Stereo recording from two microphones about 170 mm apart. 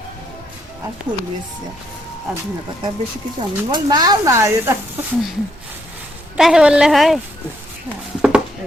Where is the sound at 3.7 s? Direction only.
25° right (ahead or behind).